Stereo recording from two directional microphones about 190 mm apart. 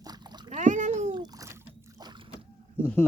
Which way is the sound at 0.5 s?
40° right (ahead or behind).